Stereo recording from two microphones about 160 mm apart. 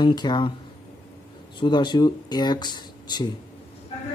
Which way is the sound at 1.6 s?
30° left (ahead or behind).